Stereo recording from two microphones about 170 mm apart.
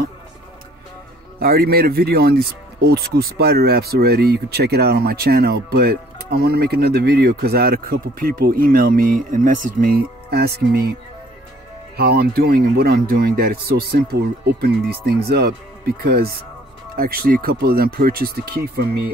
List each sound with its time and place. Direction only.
1.4 s speech: 65° right (ahead or behind)
12.0 s speech: 65° right (ahead or behind)